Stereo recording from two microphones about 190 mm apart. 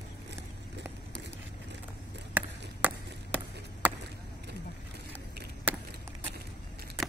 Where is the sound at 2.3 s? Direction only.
10° right (ahead or behind).